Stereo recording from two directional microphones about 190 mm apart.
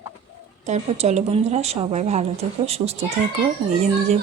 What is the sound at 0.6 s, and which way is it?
A woman's voice, 35° right (ahead or behind).